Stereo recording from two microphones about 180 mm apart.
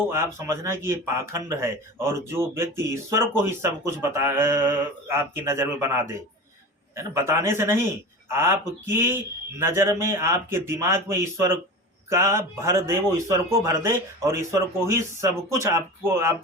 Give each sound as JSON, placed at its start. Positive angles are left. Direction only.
{"t": 0.1, "sound": "speech", "side_deg": -15}